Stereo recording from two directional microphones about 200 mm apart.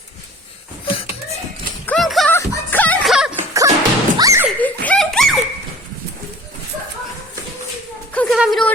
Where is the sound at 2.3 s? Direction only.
15° left (ahead or behind).